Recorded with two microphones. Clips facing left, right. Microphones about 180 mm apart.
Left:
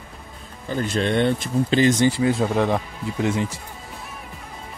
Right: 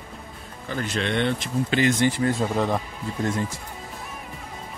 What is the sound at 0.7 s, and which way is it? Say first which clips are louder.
Speech: left 4 dB; 35° left (ahead or behind).